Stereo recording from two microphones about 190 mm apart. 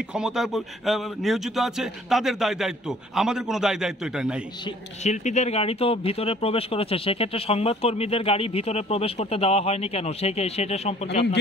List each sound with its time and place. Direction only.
0.1 s speech: centre (ahead or behind)
5.0 s speech: 40° left (ahead or behind)